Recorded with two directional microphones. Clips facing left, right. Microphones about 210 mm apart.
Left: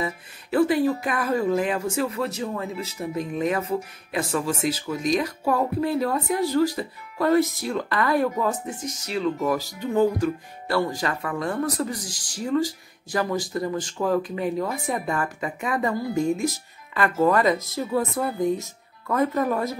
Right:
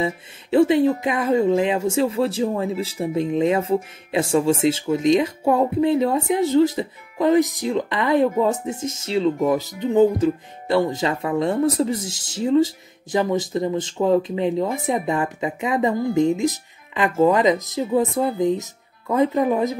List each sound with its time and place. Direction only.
0.0 s speech: 25° right (ahead or behind)